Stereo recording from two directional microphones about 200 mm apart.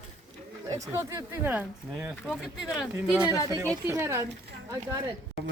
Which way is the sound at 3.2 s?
15° left (ahead or behind).